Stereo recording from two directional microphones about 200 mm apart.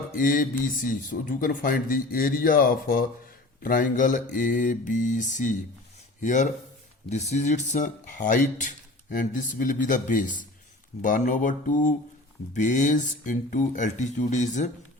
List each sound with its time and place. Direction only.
0.2 s speech: 45° left (ahead or behind)